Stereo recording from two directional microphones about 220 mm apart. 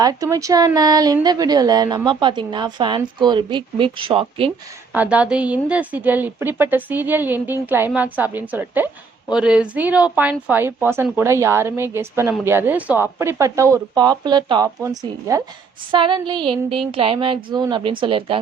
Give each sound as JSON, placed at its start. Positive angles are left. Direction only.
{"t": 0.0, "sound": "speech", "side_deg": -15}
{"t": 4.9, "sound": "a woman's voice", "side_deg": -5}